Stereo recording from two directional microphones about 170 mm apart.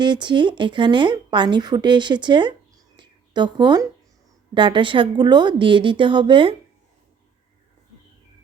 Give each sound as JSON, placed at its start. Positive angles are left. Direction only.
{"t": 0.0, "sound": "a woman's voice", "side_deg": -25}